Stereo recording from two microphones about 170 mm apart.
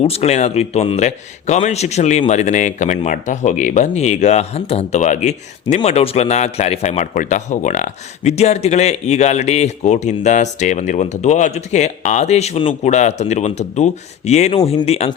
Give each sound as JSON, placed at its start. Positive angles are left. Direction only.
{"t": 0.0, "sound": "a man's voice", "side_deg": 40}